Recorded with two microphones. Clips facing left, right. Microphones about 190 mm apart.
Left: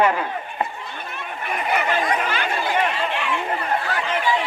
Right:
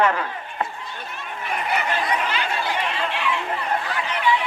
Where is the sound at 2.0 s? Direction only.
50° left (ahead or behind).